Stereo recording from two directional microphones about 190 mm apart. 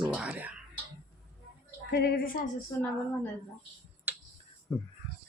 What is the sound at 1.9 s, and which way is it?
Speech, 55° left (ahead or behind).